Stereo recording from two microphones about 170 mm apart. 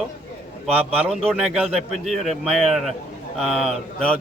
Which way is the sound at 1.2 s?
5° right (ahead or behind).